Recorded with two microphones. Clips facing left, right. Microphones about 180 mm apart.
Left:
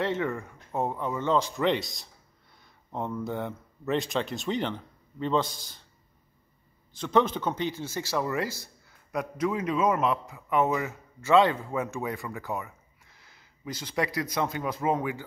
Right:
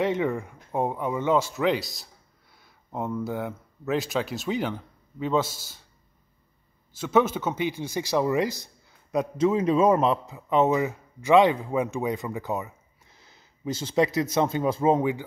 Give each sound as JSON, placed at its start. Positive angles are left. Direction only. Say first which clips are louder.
{"t": 0.0, "sound": "speech", "louder": "right 4 dB", "side_deg": -15}
{"t": 6.9, "sound": "a man's voice", "louder": "right 2 dB", "side_deg": -5}